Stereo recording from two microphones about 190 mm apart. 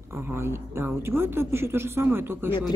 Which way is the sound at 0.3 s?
10° right (ahead or behind).